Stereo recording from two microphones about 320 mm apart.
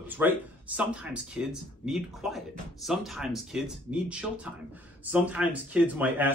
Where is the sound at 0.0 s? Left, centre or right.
Centre.